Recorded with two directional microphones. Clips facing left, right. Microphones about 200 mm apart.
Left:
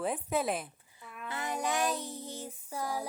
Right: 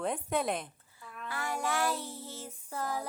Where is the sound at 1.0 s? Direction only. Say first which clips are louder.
Even; 20° left (ahead or behind).